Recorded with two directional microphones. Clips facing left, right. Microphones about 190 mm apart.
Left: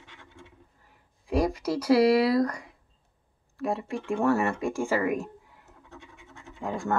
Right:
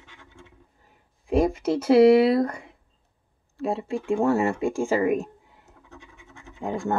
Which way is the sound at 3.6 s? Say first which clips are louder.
Right 3 dB; 25° right (ahead or behind).